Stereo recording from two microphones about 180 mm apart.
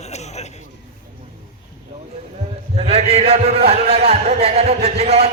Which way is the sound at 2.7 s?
35° right (ahead or behind).